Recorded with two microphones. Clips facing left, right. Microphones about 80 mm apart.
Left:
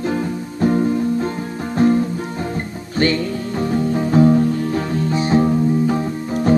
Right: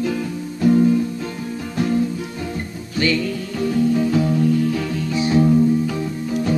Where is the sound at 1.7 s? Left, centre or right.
Left.